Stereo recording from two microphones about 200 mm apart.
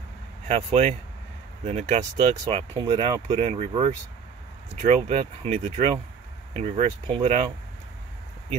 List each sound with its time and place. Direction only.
0.5 s speech: 30° right (ahead or behind)